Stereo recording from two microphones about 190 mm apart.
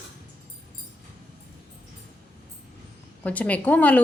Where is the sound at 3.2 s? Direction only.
10° left (ahead or behind).